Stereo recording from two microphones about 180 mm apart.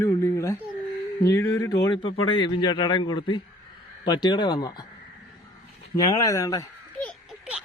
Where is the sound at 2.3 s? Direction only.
25° left (ahead or behind).